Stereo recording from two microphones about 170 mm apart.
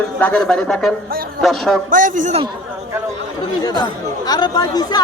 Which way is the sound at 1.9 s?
50° right (ahead or behind).